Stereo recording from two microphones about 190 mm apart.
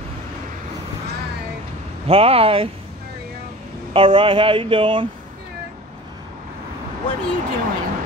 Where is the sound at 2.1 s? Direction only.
30° right (ahead or behind).